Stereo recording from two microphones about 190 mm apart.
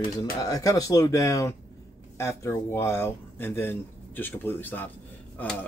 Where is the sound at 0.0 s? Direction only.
20° left (ahead or behind).